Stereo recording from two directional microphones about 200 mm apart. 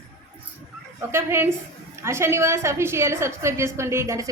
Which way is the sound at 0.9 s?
10° right (ahead or behind).